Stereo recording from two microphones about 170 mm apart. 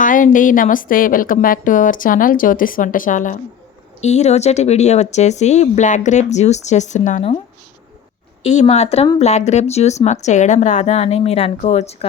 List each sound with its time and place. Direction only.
0.0 s a woman's voice: 50° left (ahead or behind)
8.4 s speech: 40° left (ahead or behind)